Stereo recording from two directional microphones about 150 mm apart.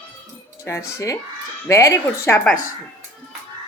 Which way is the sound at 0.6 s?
20° left (ahead or behind).